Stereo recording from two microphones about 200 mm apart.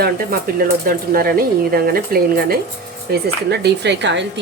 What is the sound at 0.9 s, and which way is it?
Speech, 45° right (ahead or behind).